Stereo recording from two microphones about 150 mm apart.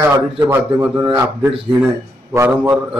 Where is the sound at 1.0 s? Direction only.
25° right (ahead or behind).